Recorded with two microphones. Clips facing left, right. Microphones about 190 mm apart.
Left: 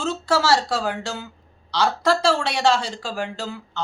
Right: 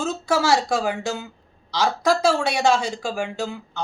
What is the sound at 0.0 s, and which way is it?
Speech, 10° right (ahead or behind).